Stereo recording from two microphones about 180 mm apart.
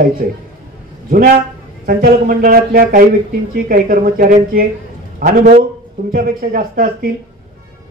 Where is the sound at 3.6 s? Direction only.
50° right (ahead or behind).